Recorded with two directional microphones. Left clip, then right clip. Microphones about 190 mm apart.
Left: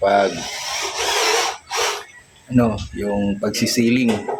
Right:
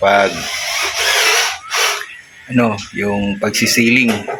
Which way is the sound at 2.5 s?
10° right (ahead or behind).